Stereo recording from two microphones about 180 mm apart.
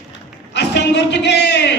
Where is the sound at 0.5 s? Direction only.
70° left (ahead or behind).